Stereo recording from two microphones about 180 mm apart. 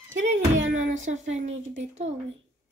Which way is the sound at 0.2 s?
45° right (ahead or behind).